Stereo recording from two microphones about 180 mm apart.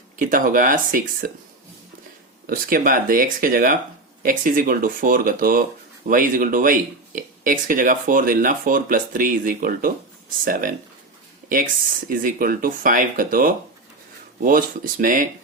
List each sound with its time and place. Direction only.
0.2 s speech: 50° right (ahead or behind)
2.5 s speech: 50° right (ahead or behind)